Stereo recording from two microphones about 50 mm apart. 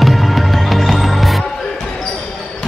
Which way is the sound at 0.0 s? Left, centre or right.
Centre.